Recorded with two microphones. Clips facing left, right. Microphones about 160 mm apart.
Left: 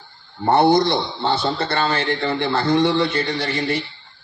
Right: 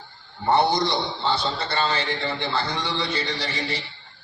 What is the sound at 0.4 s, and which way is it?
A man's voice, 50° left (ahead or behind).